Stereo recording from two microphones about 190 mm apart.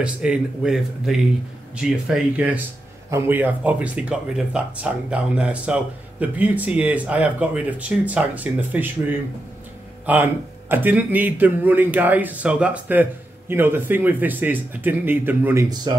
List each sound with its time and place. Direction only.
0.0 s a man's voice: 5° right (ahead or behind)
15.9 s speech: 20° right (ahead or behind)